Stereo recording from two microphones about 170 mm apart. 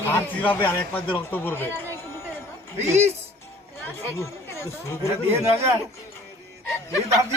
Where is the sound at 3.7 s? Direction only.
15° left (ahead or behind).